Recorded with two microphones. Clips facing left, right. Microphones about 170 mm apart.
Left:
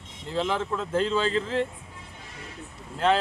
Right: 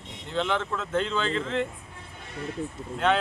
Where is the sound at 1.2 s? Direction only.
35° left (ahead or behind).